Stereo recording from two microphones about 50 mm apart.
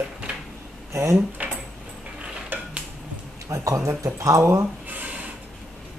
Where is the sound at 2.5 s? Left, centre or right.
Right.